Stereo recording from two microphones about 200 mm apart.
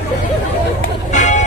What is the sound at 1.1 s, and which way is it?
Vehicle, 35° left (ahead or behind).